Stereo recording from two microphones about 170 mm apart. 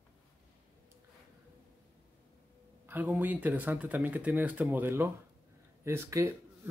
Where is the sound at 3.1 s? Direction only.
10° right (ahead or behind).